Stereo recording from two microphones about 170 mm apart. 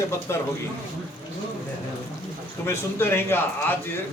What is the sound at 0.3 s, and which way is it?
Speech, 15° left (ahead or behind).